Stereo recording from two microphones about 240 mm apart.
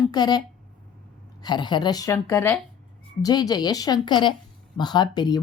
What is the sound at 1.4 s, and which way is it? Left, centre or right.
A woman's voice, centre.